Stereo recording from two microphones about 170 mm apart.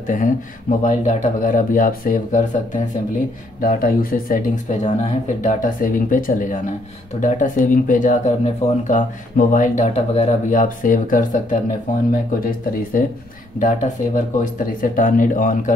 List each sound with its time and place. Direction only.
0.0 s speech: 50° left (ahead or behind)
3.6 s speech: 55° left (ahead or behind)